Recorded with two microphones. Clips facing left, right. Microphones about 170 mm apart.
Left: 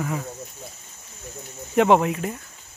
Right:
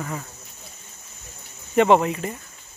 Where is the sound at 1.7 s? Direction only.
Centre (ahead or behind).